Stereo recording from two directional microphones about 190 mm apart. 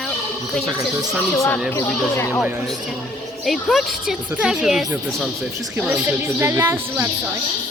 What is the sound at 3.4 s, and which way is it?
A woman's voice, centre (ahead or behind).